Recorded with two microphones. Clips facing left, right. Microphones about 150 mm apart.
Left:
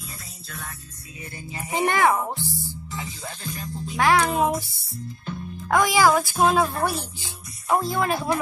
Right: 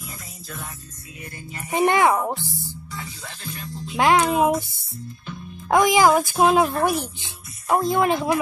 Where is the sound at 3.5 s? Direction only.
40° left (ahead or behind).